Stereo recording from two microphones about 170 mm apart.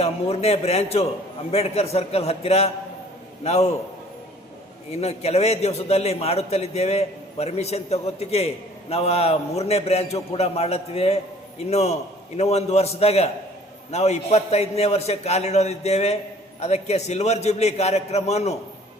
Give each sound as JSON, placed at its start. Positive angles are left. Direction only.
{"t": 0.0, "sound": "a man's voice", "side_deg": 35}
{"t": 4.9, "sound": "a man's voice", "side_deg": 35}